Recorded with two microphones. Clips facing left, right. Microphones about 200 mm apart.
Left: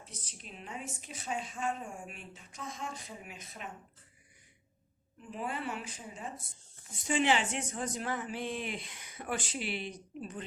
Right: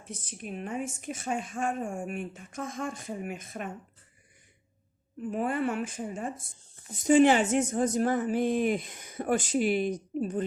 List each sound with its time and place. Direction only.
0.0 s speech: 50° right (ahead or behind)
5.3 s speech: 50° right (ahead or behind)